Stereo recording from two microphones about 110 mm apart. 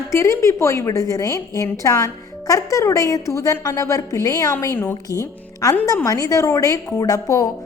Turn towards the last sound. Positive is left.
turn(degrees=30)  # may be behind; listen again after turning